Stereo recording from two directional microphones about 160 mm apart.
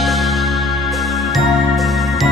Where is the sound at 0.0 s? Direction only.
Centre (ahead or behind).